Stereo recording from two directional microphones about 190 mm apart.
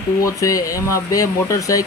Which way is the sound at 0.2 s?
15° left (ahead or behind).